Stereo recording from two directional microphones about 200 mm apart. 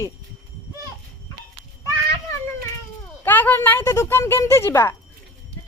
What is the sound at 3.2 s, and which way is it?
A child's voice, 10° left (ahead or behind).